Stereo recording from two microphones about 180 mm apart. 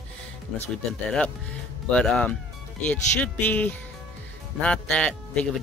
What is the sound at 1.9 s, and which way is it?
Speech, 5° left (ahead or behind).